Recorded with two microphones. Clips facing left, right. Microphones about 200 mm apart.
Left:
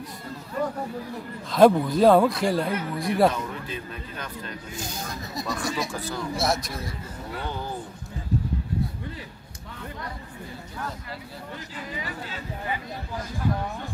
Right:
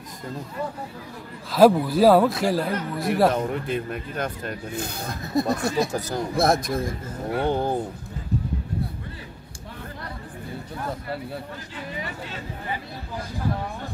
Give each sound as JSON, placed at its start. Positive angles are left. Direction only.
{"t": 1.5, "sound": "speech", "side_deg": -5}
{"t": 3.3, "sound": "speech", "side_deg": -50}
{"t": 5.9, "sound": "a man's voice", "side_deg": -40}
{"t": 6.3, "sound": "speech", "side_deg": -55}